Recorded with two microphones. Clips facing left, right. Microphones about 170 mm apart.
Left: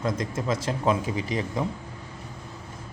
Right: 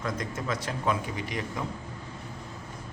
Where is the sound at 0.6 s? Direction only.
25° left (ahead or behind).